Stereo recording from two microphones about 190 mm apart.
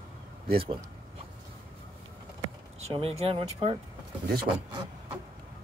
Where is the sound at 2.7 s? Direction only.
30° right (ahead or behind).